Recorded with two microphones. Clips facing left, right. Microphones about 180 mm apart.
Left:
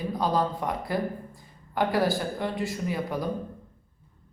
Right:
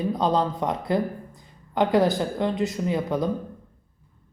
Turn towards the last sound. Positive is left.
turn(degrees=-20)  # may be behind; listen again after turning